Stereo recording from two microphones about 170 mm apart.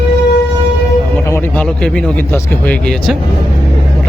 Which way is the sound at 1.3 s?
10° left (ahead or behind).